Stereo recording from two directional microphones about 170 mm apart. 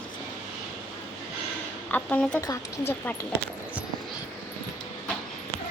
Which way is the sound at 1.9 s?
5° left (ahead or behind).